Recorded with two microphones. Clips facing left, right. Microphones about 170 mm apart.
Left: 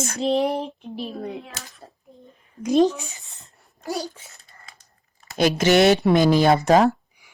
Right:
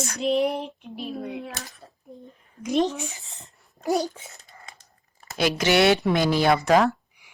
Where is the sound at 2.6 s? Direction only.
40° left (ahead or behind).